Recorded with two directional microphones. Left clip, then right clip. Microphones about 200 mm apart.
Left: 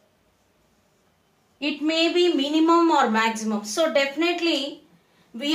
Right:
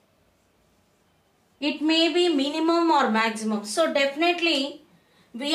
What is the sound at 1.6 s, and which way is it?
A woman's voice, 5° left (ahead or behind).